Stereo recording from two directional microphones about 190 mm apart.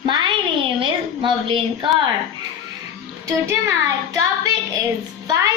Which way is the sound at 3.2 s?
15° right (ahead or behind).